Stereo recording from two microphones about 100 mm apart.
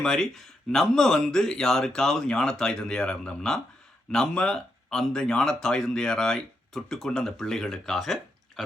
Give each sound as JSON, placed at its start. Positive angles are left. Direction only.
{"t": 0.0, "sound": "speech", "side_deg": 5}